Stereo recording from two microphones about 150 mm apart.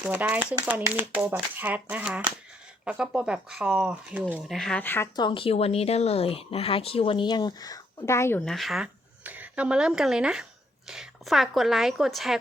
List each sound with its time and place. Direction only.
0.0 s speech: 10° right (ahead or behind)
4.5 s speech: 5° left (ahead or behind)
5.1 s speech: 30° left (ahead or behind); by 8.4 s 15° left (ahead or behind)
8.4 s a woman's voice: centre (ahead or behind)